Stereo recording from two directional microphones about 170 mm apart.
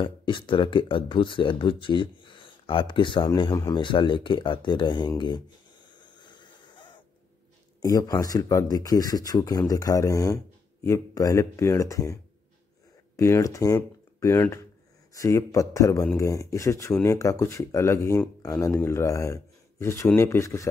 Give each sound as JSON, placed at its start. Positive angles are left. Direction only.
{"t": 0.0, "sound": "speech", "side_deg": 30}
{"t": 5.9, "sound": "a sound", "side_deg": 25}
{"t": 7.8, "sound": "speech", "side_deg": 20}